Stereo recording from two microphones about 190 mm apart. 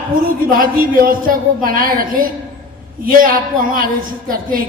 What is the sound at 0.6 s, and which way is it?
Speech, 50° right (ahead or behind).